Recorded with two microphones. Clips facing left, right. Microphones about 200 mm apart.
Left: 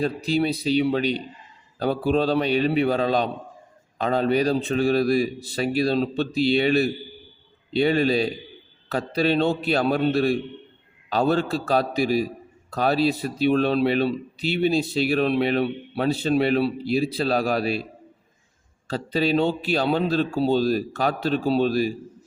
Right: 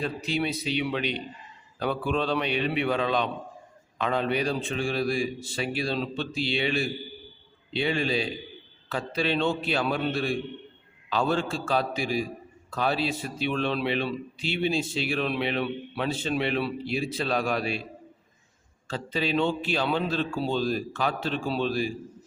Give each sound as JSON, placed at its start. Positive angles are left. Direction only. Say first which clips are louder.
{"t": 0.0, "sound": "speech", "louder": "left 6 dB", "side_deg": 35}
{"t": 18.9, "sound": "speech", "louder": "left 6 dB", "side_deg": 35}